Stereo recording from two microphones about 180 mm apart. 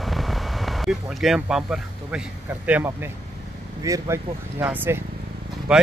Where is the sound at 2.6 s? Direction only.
10° right (ahead or behind).